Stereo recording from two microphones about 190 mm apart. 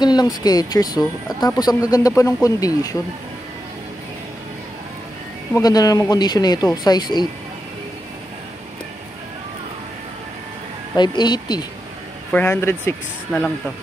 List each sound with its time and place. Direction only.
0.0 s speech: 20° left (ahead or behind)
5.5 s speech: 20° left (ahead or behind)
11.0 s speech: 20° left (ahead or behind)
12.3 s speech: 10° left (ahead or behind)